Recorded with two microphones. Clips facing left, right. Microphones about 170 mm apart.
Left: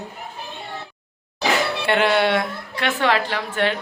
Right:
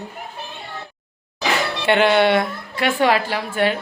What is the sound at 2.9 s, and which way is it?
Speech, 10° right (ahead or behind).